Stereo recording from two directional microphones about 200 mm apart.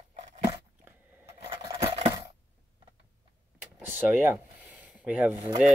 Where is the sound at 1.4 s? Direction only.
25° right (ahead or behind).